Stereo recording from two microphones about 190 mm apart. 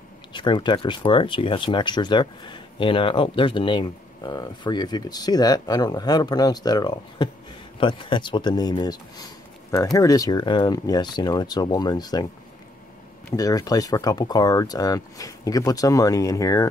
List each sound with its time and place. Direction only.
0.3 s speech: 25° left (ahead or behind)
13.4 s speech: 20° left (ahead or behind)